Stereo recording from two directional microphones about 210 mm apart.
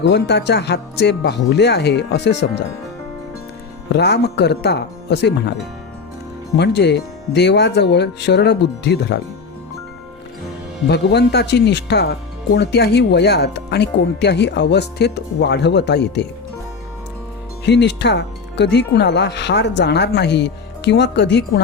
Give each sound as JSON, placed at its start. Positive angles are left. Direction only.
{"t": 0.0, "sound": "speech", "side_deg": 55}
{"t": 3.9, "sound": "speech", "side_deg": 55}
{"t": 6.6, "sound": "speech", "side_deg": 55}
{"t": 10.8, "sound": "speech", "side_deg": 50}
{"t": 17.7, "sound": "speech", "side_deg": 55}